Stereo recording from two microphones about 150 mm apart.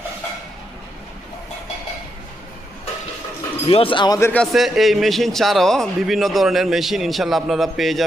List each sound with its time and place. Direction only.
3.7 s speech: 35° left (ahead or behind)
4.2 s speech: 10° left (ahead or behind)
4.5 s speech: centre (ahead or behind)